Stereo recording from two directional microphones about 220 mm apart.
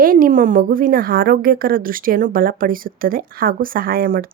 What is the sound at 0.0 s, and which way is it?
Speech, 40° right (ahead or behind).